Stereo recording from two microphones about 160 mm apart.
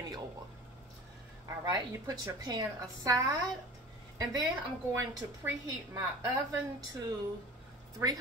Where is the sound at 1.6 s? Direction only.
20° right (ahead or behind).